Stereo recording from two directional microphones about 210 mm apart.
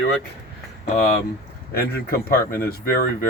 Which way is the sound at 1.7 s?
45° left (ahead or behind).